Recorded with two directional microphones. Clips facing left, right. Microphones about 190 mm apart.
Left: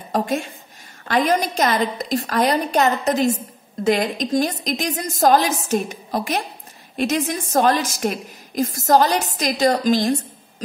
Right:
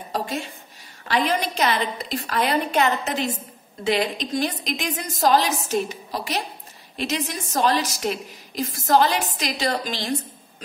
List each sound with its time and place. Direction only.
0.1 s a woman's voice: 50° left (ahead or behind)